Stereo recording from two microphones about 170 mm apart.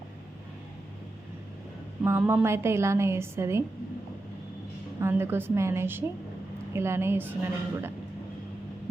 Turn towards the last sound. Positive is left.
turn(degrees=-15)  # may be behind; listen again after turning